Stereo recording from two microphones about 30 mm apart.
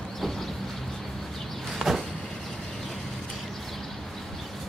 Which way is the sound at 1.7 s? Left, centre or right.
Centre.